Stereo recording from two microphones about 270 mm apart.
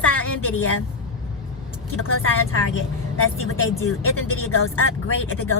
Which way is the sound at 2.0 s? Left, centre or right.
Left.